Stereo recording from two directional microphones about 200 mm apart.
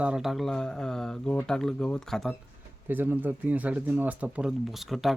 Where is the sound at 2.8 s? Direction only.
10° right (ahead or behind).